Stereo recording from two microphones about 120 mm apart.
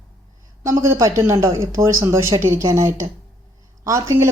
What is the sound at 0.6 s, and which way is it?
Speech, 25° right (ahead or behind).